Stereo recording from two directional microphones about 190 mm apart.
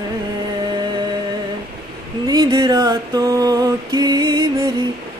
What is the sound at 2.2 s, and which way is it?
Mantra, 20° right (ahead or behind).